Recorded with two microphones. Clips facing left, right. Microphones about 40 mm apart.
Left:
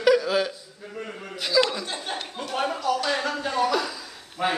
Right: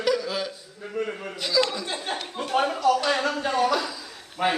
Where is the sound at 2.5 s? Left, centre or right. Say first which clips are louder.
Right 4 dB; right.